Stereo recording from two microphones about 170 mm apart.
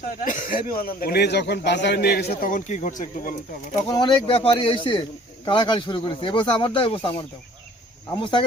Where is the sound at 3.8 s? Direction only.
25° left (ahead or behind).